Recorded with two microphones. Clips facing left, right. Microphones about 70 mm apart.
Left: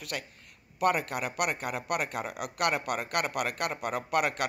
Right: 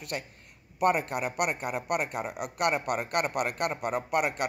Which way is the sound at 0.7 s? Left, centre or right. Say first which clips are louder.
Right 2 dB; right.